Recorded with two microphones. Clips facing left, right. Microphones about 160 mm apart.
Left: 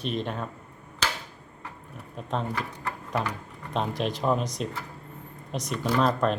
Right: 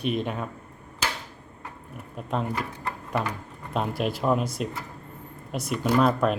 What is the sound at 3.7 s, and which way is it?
Speech, 5° right (ahead or behind).